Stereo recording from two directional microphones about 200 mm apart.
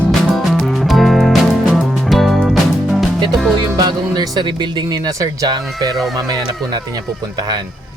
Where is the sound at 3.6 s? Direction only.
20° right (ahead or behind).